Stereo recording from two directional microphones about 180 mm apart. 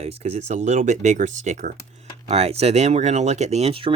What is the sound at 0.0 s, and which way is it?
Speech, 35° right (ahead or behind).